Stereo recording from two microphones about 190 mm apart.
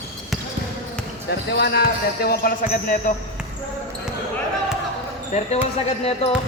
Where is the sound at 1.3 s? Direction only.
60° left (ahead or behind).